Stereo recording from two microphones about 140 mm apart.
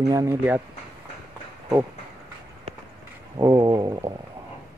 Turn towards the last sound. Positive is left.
turn(degrees=-30)  # may be behind; listen again after turning